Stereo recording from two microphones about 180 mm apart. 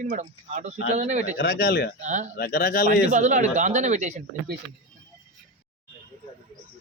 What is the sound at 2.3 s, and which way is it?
Speech, 55° left (ahead or behind).